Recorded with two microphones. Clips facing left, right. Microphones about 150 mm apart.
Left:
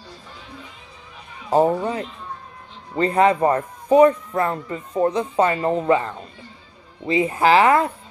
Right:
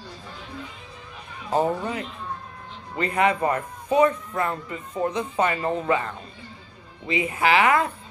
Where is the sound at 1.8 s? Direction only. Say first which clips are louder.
Left 4 dB; 30° left (ahead or behind).